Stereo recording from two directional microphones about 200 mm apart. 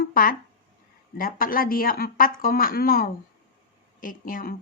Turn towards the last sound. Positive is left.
turn(degrees=45)  # may be behind; listen again after turning